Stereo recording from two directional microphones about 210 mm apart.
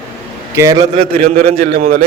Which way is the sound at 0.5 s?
15° right (ahead or behind).